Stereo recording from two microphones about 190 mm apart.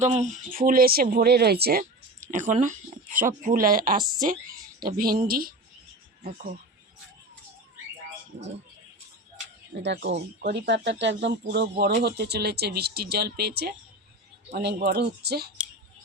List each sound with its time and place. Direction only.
0.0 s speech: 35° right (ahead or behind); by 1.8 s 55° right (ahead or behind)
1.8 s speech: 40° right (ahead or behind)
9.8 s speech: 65° right (ahead or behind)